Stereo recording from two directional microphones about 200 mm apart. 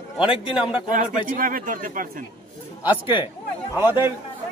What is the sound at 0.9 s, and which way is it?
A man's voice, 45° right (ahead or behind).